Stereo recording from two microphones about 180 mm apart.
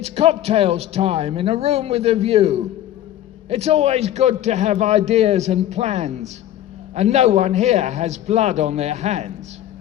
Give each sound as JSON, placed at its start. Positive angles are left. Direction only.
{"t": 0.0, "sound": "a man's voice", "side_deg": -35}